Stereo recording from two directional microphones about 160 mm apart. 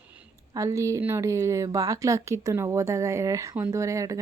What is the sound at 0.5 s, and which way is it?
A woman's voice, 20° right (ahead or behind).